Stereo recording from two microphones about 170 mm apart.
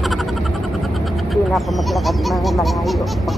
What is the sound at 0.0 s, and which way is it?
Speech, centre (ahead or behind).